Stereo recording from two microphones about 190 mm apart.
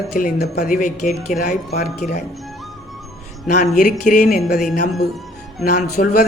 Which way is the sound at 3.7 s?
45° left (ahead or behind).